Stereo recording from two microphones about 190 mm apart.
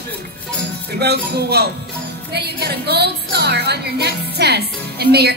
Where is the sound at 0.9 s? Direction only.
60° right (ahead or behind).